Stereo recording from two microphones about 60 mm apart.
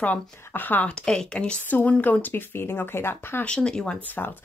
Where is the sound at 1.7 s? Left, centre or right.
Left.